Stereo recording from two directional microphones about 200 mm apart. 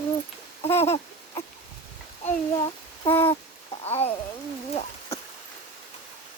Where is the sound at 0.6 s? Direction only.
10° left (ahead or behind).